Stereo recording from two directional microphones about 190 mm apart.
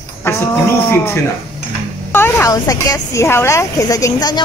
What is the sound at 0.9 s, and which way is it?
A woman's voice, 10° left (ahead or behind).